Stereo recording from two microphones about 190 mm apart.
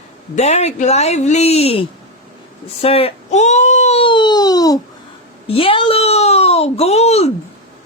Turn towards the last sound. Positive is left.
turn(degrees=35)  # may be behind; listen again after turning